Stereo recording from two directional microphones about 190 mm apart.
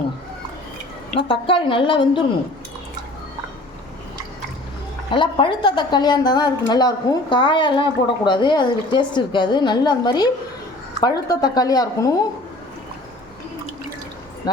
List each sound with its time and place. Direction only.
1.3 s a woman's voice: 25° left (ahead or behind)
5.1 s a woman's voice: 25° left (ahead or behind)